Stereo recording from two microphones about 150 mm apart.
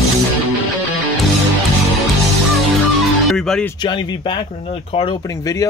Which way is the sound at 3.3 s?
5° left (ahead or behind).